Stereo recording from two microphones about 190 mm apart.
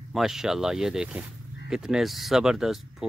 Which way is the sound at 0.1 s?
Centre (ahead or behind).